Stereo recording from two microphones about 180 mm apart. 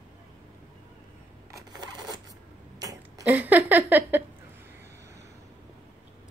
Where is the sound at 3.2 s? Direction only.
10° right (ahead or behind).